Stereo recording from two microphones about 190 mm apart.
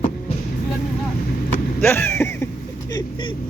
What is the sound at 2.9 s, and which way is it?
Speech, 25° left (ahead or behind).